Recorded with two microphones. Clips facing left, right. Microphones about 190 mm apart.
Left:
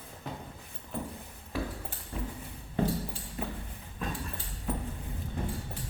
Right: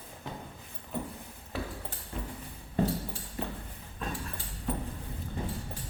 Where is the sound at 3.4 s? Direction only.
10° left (ahead or behind).